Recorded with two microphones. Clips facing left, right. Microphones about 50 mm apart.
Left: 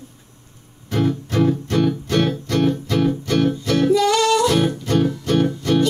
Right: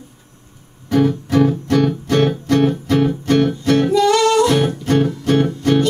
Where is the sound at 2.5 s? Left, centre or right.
Right.